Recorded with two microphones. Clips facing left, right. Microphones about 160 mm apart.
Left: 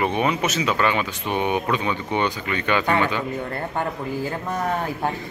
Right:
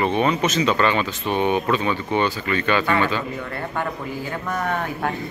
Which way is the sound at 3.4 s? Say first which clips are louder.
Left 1 dB; 35° left (ahead or behind).